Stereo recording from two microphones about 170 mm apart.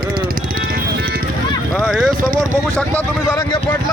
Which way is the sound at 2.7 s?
10° left (ahead or behind).